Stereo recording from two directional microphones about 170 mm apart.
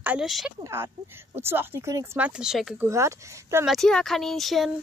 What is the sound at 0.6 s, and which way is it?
Speech, 15° right (ahead or behind).